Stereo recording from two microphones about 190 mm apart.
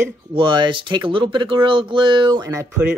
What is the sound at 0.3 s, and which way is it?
Speech, 25° right (ahead or behind).